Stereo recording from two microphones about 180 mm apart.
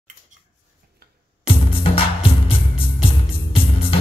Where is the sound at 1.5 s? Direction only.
30° left (ahead or behind).